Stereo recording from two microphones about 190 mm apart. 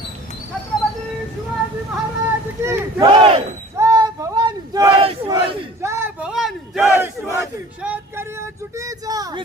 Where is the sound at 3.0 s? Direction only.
30° right (ahead or behind).